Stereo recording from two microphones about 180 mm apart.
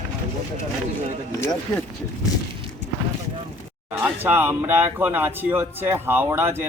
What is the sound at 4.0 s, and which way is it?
Speech, 10° right (ahead or behind).